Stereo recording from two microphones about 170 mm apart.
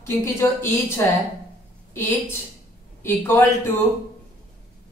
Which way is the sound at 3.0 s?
15° left (ahead or behind).